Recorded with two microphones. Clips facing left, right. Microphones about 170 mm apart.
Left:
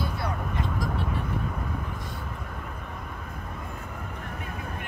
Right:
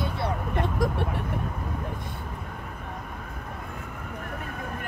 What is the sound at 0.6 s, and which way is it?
Speech, 60° right (ahead or behind).